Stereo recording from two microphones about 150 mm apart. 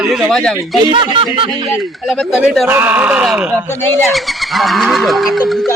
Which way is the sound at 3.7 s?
15° left (ahead or behind).